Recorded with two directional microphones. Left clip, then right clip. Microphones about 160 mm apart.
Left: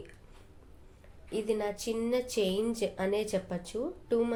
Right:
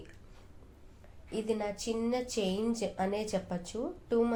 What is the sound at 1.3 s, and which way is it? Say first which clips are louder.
A woman's voice: left 2 dB; 20° left (ahead or behind).